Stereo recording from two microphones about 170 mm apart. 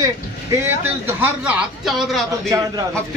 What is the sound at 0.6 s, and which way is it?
A man's voice, 10° right (ahead or behind).